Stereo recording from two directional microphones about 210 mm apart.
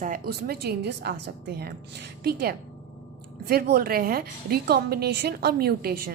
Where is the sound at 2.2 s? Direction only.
45° right (ahead or behind).